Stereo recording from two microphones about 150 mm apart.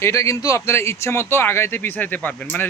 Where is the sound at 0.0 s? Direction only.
20° left (ahead or behind).